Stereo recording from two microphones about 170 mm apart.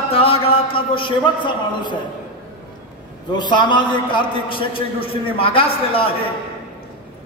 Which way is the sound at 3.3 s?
25° left (ahead or behind).